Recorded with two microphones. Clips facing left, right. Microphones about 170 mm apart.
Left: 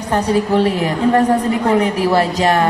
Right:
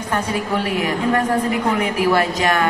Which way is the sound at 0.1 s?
35° left (ahead or behind).